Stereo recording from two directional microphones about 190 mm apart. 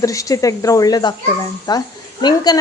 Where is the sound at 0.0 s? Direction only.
15° left (ahead or behind).